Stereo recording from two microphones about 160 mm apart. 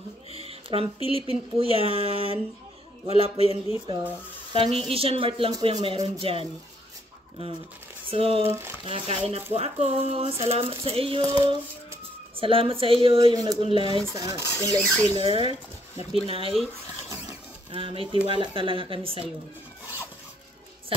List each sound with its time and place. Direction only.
0.3 s a sound: 40° right (ahead or behind)
0.9 s speech: 35° left (ahead or behind)
1.6 s a woman's voice: 35° right (ahead or behind)
8.1 s speech: 35° right (ahead or behind)
8.5 s speech: 15° right (ahead or behind)
8.8 s speech: 35° right (ahead or behind)
14.0 s rub: 20° right (ahead or behind)
15.2 s speech: 35° right (ahead or behind)
17.6 s speech: 35° right (ahead or behind)